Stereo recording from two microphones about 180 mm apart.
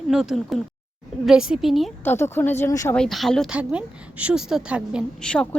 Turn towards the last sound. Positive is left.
turn(degrees=5)  # may be behind; listen again after turning